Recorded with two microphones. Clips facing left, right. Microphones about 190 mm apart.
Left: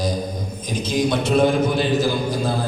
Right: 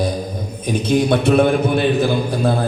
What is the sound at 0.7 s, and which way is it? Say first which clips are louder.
A man's voice: right 5 dB; 60° right (ahead or behind).